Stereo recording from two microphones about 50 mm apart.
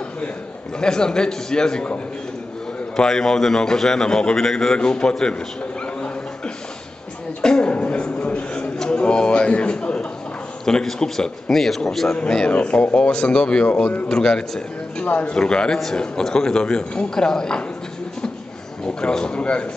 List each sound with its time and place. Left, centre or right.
0.7 s a man's voice: centre
3.0 s a man's voice: centre
5.9 s a sound: left
8.7 s a man's voice: centre
10.6 s a man's voice: centre
12.2 s a man's voice: centre
15.0 s a man's voice: left
18.9 s speech: centre